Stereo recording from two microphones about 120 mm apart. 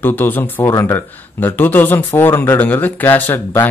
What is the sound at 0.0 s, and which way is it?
Speech, 15° left (ahead or behind).